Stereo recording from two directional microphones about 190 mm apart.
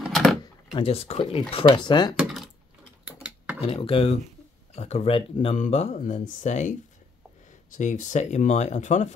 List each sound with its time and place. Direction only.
0.0 s a sound: centre (ahead or behind)
0.7 s speech: 30° left (ahead or behind)
2.1 s a sound: centre (ahead or behind)
3.1 s mechanisms: 5° right (ahead or behind)
3.6 s speech: 30° left (ahead or behind)
7.7 s speech: 40° left (ahead or behind)